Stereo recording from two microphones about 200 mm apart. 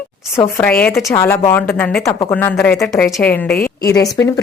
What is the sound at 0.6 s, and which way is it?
Speech, 5° left (ahead or behind).